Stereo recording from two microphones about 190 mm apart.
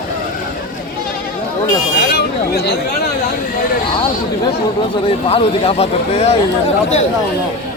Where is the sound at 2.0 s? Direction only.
60° left (ahead or behind).